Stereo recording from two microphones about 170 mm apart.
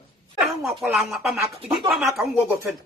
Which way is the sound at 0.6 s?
Centre (ahead or behind).